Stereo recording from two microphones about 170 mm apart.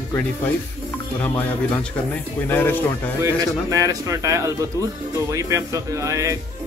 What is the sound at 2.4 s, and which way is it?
Speech, 10° left (ahead or behind).